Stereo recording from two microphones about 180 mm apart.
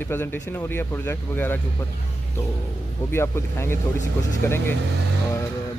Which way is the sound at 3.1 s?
15° left (ahead or behind).